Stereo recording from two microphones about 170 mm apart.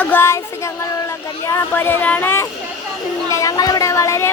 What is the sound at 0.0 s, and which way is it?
Child singing, 10° left (ahead or behind).